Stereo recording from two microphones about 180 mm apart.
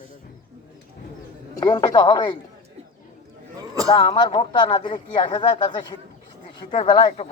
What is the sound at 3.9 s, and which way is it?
Speech, 30° left (ahead or behind).